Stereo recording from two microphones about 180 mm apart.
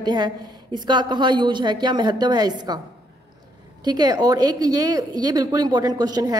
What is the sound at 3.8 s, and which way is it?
A woman's voice, 20° right (ahead or behind).